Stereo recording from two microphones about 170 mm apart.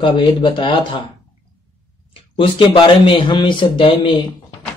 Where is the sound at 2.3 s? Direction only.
30° left (ahead or behind).